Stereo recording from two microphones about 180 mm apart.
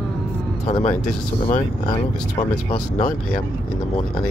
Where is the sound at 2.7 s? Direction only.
30° left (ahead or behind).